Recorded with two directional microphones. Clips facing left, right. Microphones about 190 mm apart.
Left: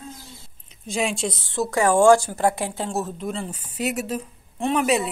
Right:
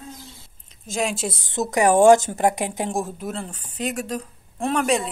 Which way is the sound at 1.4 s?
20° right (ahead or behind).